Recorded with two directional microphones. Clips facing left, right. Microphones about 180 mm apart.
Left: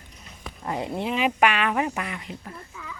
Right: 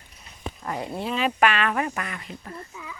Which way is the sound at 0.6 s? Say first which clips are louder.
Left 2 dB; 20° left (ahead or behind).